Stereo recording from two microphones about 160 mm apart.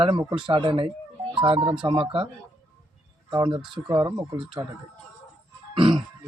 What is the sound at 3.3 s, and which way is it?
Speech, 30° right (ahead or behind).